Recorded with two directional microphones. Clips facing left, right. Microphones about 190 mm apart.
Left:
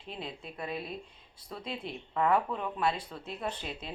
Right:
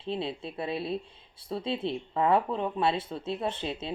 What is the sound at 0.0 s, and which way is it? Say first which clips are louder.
Speech: right 9 dB; 30° right (ahead or behind).